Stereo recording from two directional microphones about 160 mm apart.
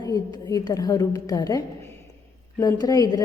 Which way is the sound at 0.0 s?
25° left (ahead or behind).